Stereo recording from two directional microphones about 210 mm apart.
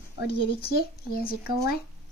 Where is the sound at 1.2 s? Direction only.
45° left (ahead or behind).